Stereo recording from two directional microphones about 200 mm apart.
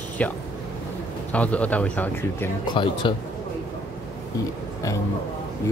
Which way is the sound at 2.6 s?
25° left (ahead or behind).